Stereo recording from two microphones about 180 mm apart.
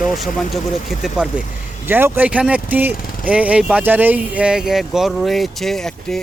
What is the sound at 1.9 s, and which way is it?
Speech, 10° right (ahead or behind).